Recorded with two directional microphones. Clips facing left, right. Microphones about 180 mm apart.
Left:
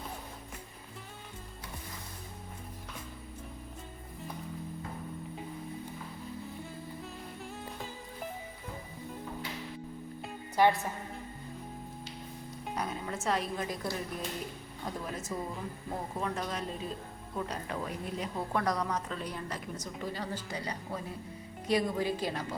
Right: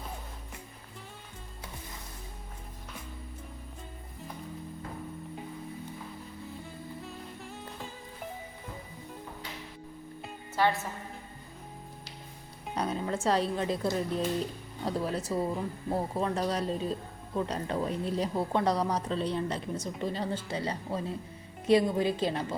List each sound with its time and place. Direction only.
10.6 s a woman's voice: 15° left (ahead or behind)
12.7 s music: 30° right (ahead or behind)
13.2 s speech: 30° right (ahead or behind)